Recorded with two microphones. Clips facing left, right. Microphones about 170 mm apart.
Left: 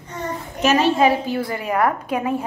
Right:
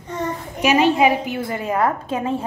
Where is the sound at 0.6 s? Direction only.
15° right (ahead or behind).